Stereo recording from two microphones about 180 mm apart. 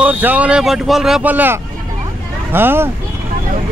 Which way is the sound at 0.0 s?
10° right (ahead or behind).